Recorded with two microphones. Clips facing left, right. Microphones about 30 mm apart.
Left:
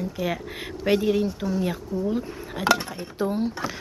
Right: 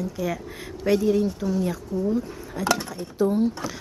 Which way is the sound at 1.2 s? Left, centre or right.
Centre.